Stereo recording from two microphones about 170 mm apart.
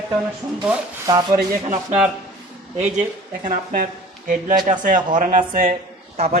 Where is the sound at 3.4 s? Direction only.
55° right (ahead or behind).